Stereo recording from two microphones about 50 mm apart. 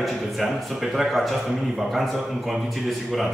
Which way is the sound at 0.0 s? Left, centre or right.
Centre.